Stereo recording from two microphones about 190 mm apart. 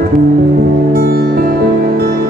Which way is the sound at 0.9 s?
50° right (ahead or behind).